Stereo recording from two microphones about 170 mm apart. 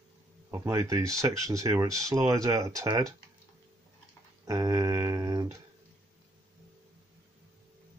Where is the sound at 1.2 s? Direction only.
20° right (ahead or behind).